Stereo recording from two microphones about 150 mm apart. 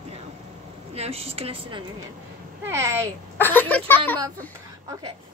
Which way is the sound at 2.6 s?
20° right (ahead or behind).